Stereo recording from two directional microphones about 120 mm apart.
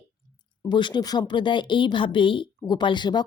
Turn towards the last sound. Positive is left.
turn(degrees=40)  # may be behind; listen again after turning